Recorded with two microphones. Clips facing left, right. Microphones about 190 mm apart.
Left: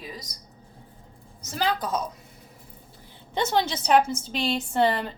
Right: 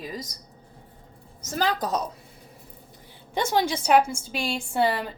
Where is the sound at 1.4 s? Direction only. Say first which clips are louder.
Right 1 dB; 45° right (ahead or behind).